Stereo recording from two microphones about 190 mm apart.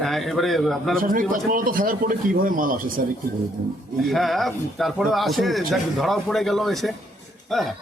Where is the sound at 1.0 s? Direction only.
45° right (ahead or behind).